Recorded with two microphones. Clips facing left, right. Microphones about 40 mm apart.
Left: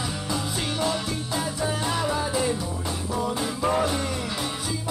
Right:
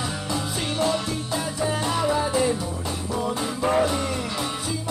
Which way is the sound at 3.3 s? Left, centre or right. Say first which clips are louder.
Right 3 dB; centre.